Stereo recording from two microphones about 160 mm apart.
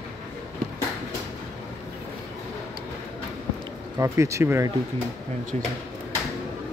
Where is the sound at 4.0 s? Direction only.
20° right (ahead or behind).